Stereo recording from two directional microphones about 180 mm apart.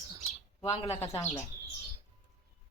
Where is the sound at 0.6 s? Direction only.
35° left (ahead or behind).